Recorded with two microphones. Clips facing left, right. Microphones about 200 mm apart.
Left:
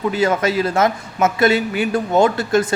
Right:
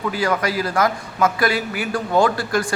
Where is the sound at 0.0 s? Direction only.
25° left (ahead or behind).